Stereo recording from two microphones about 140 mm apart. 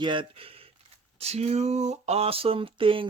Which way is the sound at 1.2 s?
50° right (ahead or behind).